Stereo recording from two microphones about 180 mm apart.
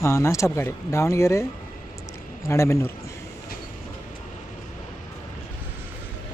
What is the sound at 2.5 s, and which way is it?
Speech, 15° left (ahead or behind).